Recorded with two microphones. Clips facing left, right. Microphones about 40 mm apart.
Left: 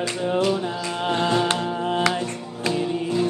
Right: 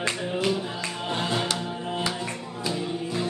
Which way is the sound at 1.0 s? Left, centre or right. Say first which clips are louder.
Left 7 dB; left.